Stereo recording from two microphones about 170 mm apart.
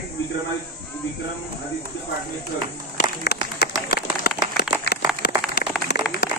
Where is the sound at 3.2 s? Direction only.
65° left (ahead or behind).